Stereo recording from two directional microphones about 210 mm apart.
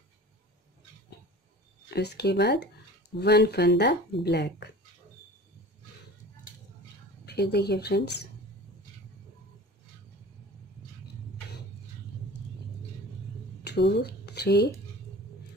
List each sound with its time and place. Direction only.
2.0 s speech: 50° left (ahead or behind)
7.2 s speech: 50° left (ahead or behind)
13.7 s speech: 50° left (ahead or behind)